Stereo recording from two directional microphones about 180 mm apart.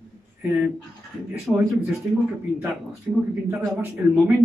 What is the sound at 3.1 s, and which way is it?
Speech, 10° right (ahead or behind).